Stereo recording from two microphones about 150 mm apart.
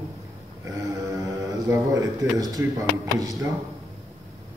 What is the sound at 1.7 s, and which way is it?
Speech, 20° right (ahead or behind).